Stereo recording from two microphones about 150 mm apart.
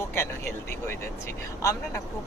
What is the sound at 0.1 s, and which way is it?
Speech, 15° left (ahead or behind).